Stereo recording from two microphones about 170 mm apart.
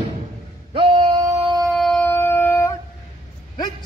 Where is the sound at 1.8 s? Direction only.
5° left (ahead or behind).